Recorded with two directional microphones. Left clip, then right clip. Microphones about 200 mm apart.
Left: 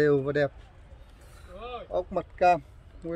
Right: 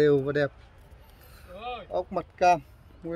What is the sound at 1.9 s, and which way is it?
Speech, 10° right (ahead or behind).